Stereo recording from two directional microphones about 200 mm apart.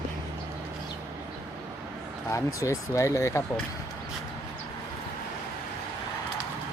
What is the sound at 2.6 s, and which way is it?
Speech, 15° left (ahead or behind).